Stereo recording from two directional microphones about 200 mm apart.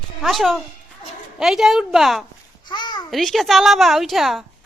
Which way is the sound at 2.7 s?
20° left (ahead or behind).